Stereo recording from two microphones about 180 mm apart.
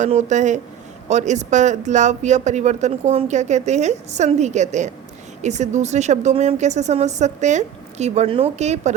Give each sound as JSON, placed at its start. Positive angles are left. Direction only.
{"t": 0.0, "sound": "speech", "side_deg": -40}